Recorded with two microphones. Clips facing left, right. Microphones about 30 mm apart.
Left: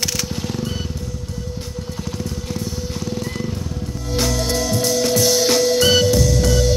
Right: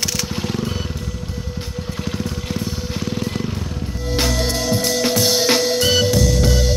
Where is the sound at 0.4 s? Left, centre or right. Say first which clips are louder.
Right 2 dB; right.